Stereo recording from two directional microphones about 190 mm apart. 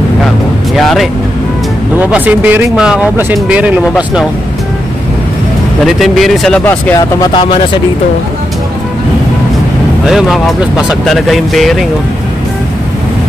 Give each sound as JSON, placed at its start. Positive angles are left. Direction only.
{"t": 0.7, "sound": "speech", "side_deg": 0}
{"t": 5.9, "sound": "speech", "side_deg": 0}
{"t": 7.0, "sound": "speech", "side_deg": 25}
{"t": 10.0, "sound": "speech", "side_deg": 0}